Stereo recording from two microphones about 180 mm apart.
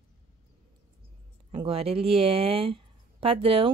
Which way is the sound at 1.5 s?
30° right (ahead or behind).